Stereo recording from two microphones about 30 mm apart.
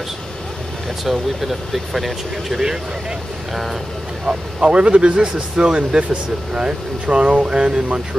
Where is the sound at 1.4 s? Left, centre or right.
Centre.